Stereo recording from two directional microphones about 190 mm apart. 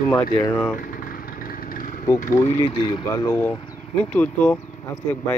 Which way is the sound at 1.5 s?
45° left (ahead or behind).